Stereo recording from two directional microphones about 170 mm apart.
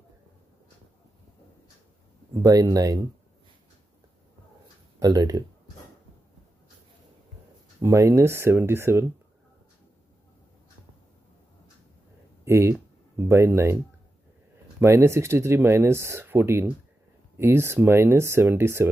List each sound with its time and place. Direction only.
2.4 s speech: 20° right (ahead or behind)
5.0 s speech: 20° right (ahead or behind)
7.8 s speech: 15° right (ahead or behind)
12.4 s speech: 15° right (ahead or behind)
14.8 s speech: 15° right (ahead or behind)